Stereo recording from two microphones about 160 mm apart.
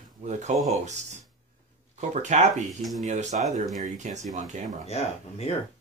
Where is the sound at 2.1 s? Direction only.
45° right (ahead or behind).